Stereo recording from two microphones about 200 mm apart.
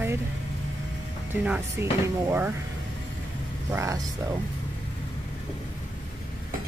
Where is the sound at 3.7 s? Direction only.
15° right (ahead or behind).